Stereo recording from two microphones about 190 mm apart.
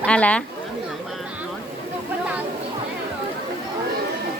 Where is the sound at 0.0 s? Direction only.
5° left (ahead or behind).